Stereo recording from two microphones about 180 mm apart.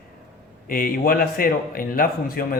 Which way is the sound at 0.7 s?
55° left (ahead or behind).